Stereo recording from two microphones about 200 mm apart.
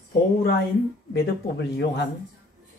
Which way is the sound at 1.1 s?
60° left (ahead or behind).